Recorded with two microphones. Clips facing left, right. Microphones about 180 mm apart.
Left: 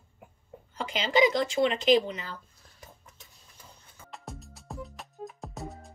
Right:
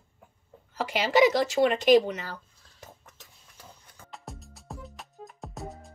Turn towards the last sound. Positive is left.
turn(degrees=0)  # may be behind; listen again after turning